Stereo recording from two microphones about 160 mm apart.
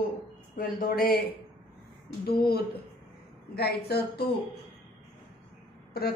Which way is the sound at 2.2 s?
80° left.